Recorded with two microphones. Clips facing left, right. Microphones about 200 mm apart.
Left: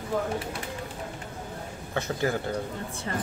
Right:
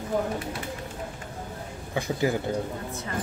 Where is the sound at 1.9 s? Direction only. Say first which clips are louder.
Right 2 dB; 15° right (ahead or behind).